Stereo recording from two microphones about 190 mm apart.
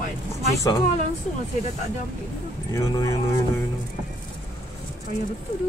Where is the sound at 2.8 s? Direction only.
20° left (ahead or behind).